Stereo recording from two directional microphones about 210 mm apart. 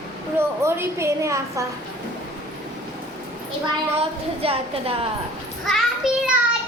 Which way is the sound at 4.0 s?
25° right (ahead or behind).